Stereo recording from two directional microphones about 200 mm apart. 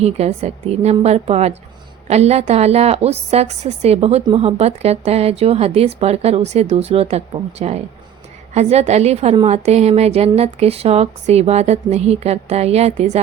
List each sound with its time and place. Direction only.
0.0 s a woman's voice: 30° right (ahead or behind)